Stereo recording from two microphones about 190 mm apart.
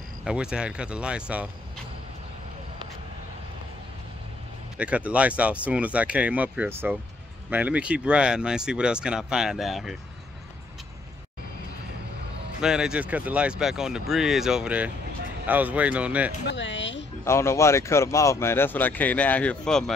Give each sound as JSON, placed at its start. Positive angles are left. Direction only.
{"t": 0.2, "sound": "speech", "side_deg": -5}
{"t": 4.7, "sound": "speech", "side_deg": -5}
{"t": 12.5, "sound": "speech", "side_deg": -5}
{"t": 16.4, "sound": "speech", "side_deg": 70}
{"t": 17.2, "sound": "speech", "side_deg": 15}